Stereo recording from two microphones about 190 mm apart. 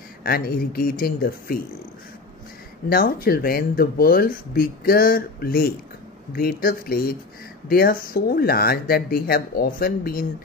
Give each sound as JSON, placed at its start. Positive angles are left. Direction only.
{"t": 0.2, "sound": "speech", "side_deg": 50}
{"t": 2.9, "sound": "speech", "side_deg": 50}